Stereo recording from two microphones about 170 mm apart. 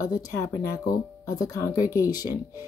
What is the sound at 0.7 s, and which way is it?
Speech, 20° left (ahead or behind).